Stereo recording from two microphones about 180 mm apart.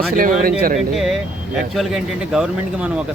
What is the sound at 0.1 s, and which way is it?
Speech, 50° right (ahead or behind).